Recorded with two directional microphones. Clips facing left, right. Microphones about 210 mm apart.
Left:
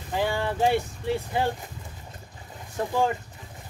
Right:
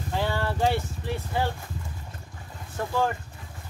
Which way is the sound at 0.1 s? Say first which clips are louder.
Left 2 dB; 15° left (ahead or behind).